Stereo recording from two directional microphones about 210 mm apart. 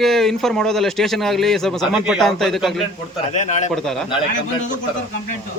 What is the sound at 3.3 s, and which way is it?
Speech, 35° left (ahead or behind).